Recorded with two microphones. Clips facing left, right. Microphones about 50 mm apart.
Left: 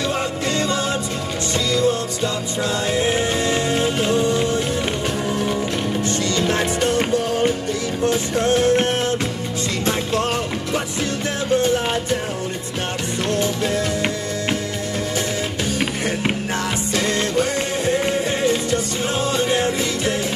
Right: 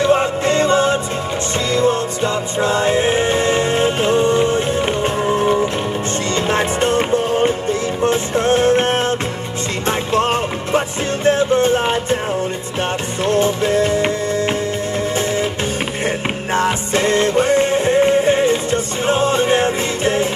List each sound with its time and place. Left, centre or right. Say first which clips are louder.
0.0 s music: right 7 dB; right
13.3 s music: right 6 dB; right
16.5 s music: right 5 dB; right